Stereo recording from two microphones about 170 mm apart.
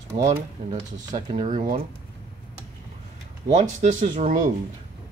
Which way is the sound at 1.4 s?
50° right (ahead or behind).